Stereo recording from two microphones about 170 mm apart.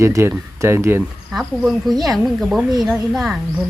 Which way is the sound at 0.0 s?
15° right (ahead or behind).